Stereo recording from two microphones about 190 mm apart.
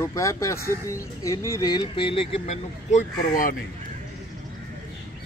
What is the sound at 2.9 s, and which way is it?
Speech, 45° left (ahead or behind).